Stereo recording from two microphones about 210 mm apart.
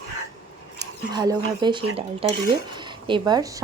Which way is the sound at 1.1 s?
20° right (ahead or behind).